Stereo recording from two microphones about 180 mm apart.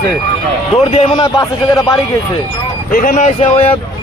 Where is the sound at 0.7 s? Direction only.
35° left (ahead or behind).